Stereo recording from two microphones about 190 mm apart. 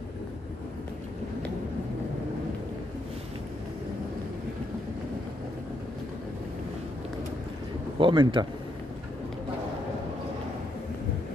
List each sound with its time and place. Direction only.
8.0 s speech: 25° right (ahead or behind)